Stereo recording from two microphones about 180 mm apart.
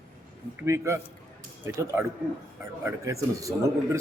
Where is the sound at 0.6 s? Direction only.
15° right (ahead or behind).